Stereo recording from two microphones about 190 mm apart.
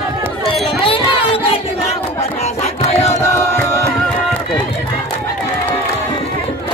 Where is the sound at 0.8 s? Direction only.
30° left (ahead or behind).